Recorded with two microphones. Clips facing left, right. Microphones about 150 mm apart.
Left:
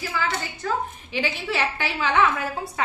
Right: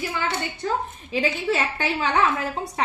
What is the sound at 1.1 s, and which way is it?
A woman's voice, 35° right (ahead or behind).